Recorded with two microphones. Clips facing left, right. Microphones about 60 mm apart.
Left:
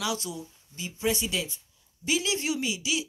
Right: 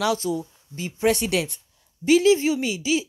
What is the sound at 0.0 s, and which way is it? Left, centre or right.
Speech, right.